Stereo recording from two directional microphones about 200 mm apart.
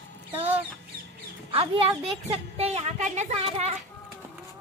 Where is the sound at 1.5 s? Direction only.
25° right (ahead or behind).